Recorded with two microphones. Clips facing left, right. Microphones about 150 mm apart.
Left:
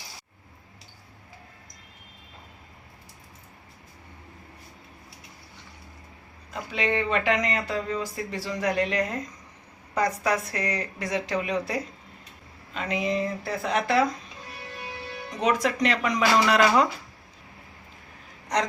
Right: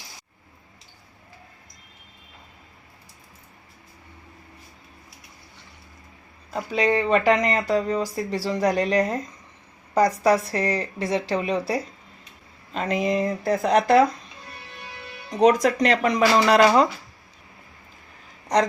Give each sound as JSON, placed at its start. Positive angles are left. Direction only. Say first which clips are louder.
{"t": 6.5, "sound": "speech", "louder": "right 5 dB", "side_deg": -40}
{"t": 15.4, "sound": "speech", "louder": "right 7 dB", "side_deg": -40}